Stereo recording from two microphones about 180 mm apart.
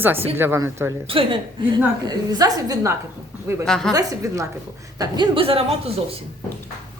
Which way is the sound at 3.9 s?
20° right (ahead or behind).